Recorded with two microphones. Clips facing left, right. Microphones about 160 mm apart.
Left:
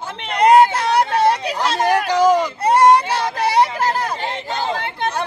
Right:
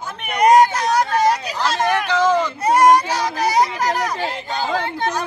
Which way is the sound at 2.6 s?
30° left (ahead or behind).